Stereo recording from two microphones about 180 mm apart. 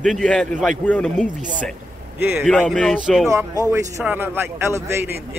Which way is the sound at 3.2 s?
15° right (ahead or behind).